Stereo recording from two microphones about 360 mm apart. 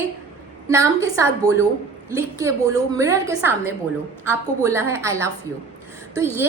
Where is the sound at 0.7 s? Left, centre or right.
Centre.